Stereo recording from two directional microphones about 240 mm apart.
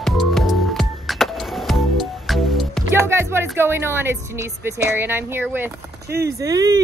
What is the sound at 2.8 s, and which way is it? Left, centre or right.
Music, centre.